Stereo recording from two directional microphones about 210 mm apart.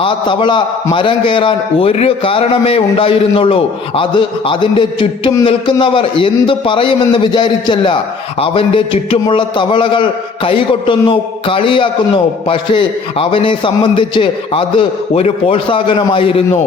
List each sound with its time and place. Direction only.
0.0 s a man's voice: 25° left (ahead or behind)